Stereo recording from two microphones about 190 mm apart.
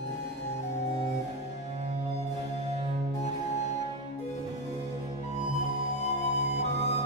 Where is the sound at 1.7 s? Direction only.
30° right (ahead or behind).